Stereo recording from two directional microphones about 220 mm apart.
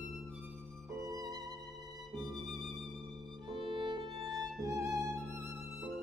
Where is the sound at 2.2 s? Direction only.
Centre (ahead or behind).